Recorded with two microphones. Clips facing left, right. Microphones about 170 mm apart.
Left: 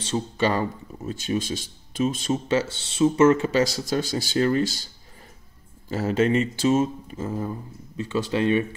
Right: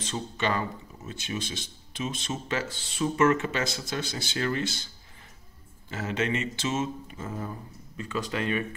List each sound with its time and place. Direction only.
0.0 s speech: 30° left (ahead or behind)
2.4 s speech: 30° left (ahead or behind)
5.9 s speech: 40° left (ahead or behind)